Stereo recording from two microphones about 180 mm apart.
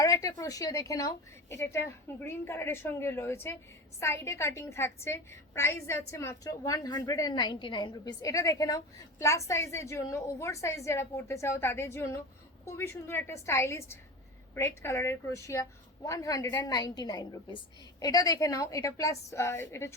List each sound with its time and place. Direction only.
0.0 s a woman's voice: 20° left (ahead or behind)